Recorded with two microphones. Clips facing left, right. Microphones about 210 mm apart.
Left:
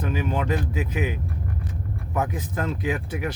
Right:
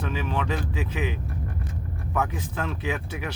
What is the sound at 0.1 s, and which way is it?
Speech, 20° left (ahead or behind).